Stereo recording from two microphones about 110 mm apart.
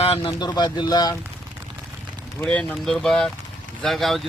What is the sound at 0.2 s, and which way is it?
Speech, 40° left (ahead or behind).